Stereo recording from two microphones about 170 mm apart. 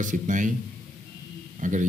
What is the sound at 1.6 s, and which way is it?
Speech, 50° right (ahead or behind).